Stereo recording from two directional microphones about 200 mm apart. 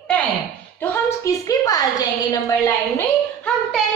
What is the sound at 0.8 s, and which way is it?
A woman's voice, 15° left (ahead or behind).